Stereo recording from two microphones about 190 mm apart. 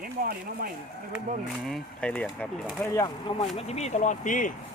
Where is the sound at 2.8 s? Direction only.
15° left (ahead or behind); by 4.5 s 45° left (ahead or behind).